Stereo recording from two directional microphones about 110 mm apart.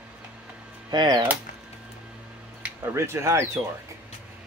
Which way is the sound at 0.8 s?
40° right (ahead or behind).